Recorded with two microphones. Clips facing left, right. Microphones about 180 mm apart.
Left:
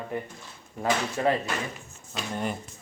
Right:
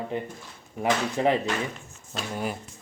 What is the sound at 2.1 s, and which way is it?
Speech, 5° right (ahead or behind).